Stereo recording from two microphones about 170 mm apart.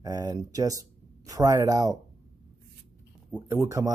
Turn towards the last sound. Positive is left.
turn(degrees=-20)  # may be behind; listen again after turning